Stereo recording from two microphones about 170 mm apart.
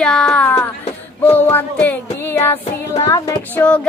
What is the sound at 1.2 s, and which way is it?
Music, 10° left (ahead or behind).